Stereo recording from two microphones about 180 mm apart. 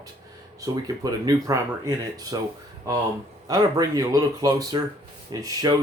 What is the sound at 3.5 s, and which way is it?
Speech, 20° right (ahead or behind).